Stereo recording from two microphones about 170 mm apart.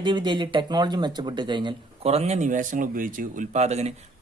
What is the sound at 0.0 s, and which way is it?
Speech, 25° right (ahead or behind).